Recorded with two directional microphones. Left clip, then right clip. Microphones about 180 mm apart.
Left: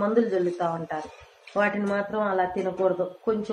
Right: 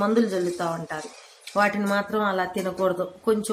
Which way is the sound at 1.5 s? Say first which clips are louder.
Right 2 dB; 90° right.